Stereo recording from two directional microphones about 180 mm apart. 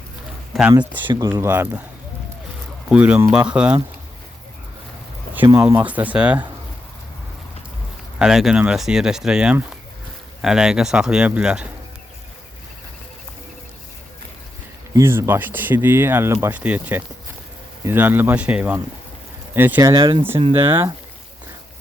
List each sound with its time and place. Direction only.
0.5 s speech: centre (ahead or behind)
1.3 s speech: 10° right (ahead or behind)
2.9 s speech: 10° right (ahead or behind)
5.5 s speech: 15° right (ahead or behind)
8.2 s speech: 5° right (ahead or behind)
14.9 s speech: 15° right (ahead or behind)
19.9 s speech: 30° right (ahead or behind)
20.5 s speech: 15° right (ahead or behind)